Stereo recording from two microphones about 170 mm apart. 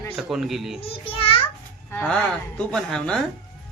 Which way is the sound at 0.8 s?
35° left (ahead or behind).